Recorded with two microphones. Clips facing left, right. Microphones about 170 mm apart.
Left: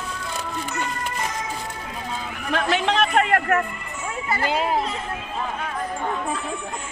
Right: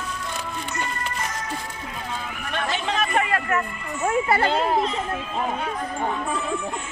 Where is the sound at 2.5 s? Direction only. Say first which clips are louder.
Left 5 dB; 80° left; by 3.6 s 60° left (ahead or behind).